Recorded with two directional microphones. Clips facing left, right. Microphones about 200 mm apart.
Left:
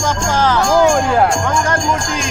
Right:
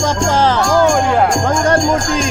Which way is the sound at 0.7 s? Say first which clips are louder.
Left 1 dB; 10° left (ahead or behind).